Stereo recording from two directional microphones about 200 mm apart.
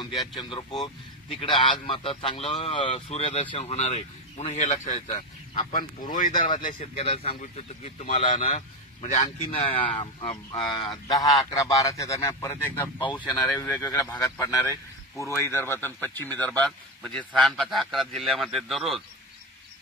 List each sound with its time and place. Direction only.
0.4 s a man's voice: 25° left (ahead or behind)
10.6 s a man's voice: centre (ahead or behind)
11.1 s a man's voice: 20° left (ahead or behind); by 19.0 s centre (ahead or behind)